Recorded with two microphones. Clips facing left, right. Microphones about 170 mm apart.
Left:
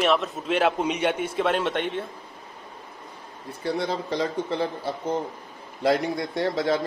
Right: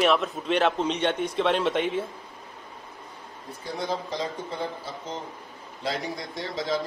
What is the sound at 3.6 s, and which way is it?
Speech, 65° left (ahead or behind).